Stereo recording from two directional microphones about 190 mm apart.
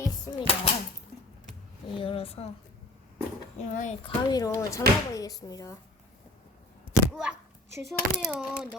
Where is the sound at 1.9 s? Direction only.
30° left (ahead or behind).